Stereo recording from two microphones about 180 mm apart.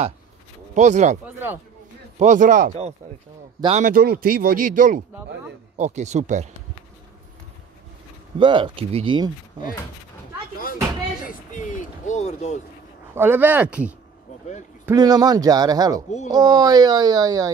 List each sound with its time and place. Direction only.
0.7 s speech: 40° right (ahead or behind)
1.2 s speech: 10° right (ahead or behind)
2.1 s speech: 45° right (ahead or behind)
3.9 s speech: 55° right (ahead or behind); by 6.5 s 40° right (ahead or behind)
8.4 s speech: 25° right (ahead or behind)
11.2 s speech: 45° left (ahead or behind)
13.1 s speech: 10° right (ahead or behind)
14.9 s speech: 20° right (ahead or behind)